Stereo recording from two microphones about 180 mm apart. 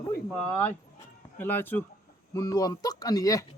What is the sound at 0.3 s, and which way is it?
Speech, 10° left (ahead or behind).